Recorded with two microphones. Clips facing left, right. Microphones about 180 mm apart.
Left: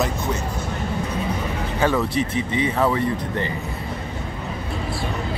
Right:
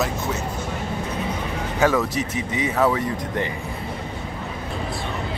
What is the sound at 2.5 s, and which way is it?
Speech, 5° right (ahead or behind).